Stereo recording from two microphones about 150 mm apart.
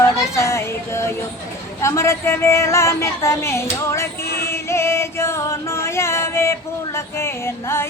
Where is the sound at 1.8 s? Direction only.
15° left (ahead or behind).